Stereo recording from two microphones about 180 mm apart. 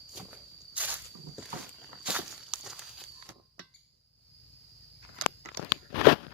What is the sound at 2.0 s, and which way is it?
Walk, 5° right (ahead or behind).